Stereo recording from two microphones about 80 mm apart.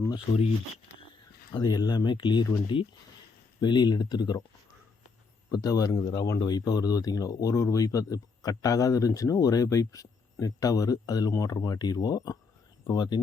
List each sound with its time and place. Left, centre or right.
1.5 s speech: left
3.6 s speech: left
5.5 s speech: left
12.9 s speech: left